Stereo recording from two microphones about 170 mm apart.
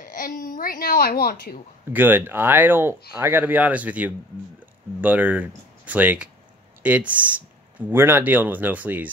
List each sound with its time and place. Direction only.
0.0 s speech: 55° left (ahead or behind)
1.9 s speech: 10° right (ahead or behind)